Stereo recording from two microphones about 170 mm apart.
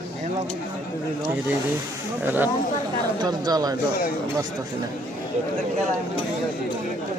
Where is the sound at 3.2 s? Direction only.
25° right (ahead or behind).